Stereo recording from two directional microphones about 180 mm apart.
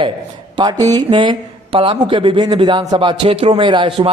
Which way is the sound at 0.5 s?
25° right (ahead or behind).